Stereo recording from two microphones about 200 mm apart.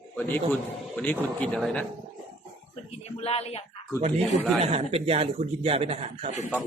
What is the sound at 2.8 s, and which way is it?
Speech, 30° left (ahead or behind).